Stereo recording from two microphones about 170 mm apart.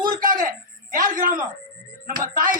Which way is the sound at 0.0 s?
55° right (ahead or behind).